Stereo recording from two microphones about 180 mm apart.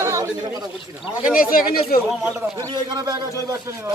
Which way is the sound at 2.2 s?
20° right (ahead or behind).